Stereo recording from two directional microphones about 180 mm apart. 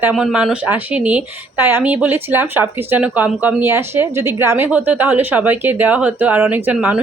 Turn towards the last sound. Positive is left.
turn(degrees=-10)  # may be behind; listen again after turning